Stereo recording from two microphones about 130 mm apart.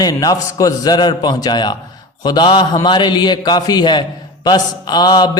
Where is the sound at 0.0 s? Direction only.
30° left (ahead or behind).